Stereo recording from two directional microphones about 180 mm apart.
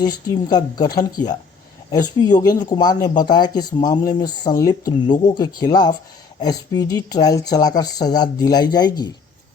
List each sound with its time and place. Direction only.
0.1 s speech: 20° left (ahead or behind)